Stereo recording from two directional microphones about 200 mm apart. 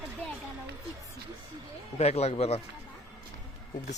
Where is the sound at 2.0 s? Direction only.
30° left (ahead or behind).